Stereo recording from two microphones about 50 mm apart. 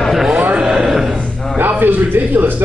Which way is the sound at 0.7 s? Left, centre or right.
Centre.